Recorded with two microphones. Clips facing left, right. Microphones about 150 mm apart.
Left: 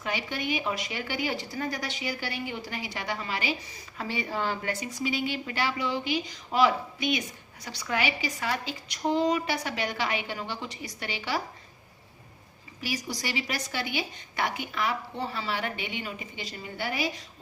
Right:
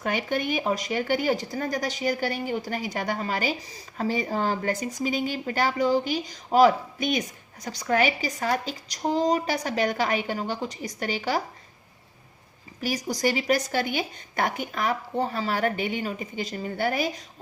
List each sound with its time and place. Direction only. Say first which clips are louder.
0.0 s speech: right 5 dB; 50° right (ahead or behind)
12.8 s speech: right 8 dB; 45° right (ahead or behind)